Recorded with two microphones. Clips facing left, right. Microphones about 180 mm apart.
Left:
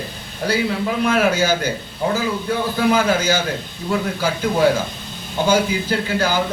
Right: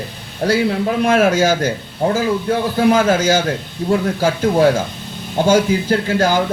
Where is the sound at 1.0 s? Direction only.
45° right (ahead or behind).